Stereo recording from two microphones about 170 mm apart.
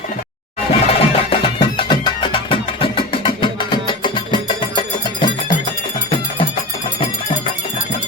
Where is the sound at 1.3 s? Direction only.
30° left (ahead or behind).